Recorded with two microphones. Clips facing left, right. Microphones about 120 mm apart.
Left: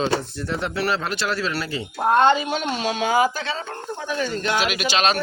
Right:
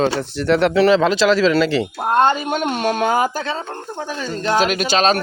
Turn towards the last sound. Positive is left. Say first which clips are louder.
# right 5 dB
turn(degrees=-40)  # may be behind; listen again after turning